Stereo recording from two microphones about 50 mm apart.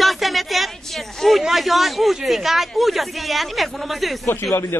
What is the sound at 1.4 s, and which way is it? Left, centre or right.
Speech, centre.